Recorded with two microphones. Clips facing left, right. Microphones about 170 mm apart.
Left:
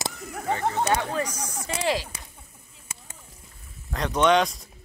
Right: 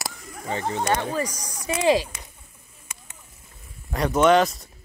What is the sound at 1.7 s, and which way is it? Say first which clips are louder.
Speech: right 6 dB; 10° right (ahead or behind).